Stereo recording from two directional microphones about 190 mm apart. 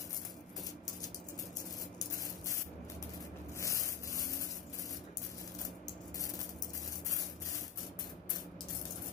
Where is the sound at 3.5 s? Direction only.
15° left (ahead or behind).